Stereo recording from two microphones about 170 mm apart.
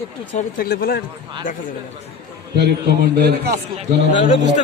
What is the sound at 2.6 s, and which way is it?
Speech, 75° right (ahead or behind).